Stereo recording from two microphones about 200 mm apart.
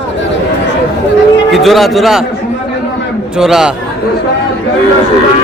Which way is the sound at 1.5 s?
Centre (ahead or behind).